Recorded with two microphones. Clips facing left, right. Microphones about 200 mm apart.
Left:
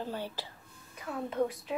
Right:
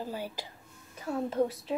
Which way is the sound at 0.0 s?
10° right (ahead or behind).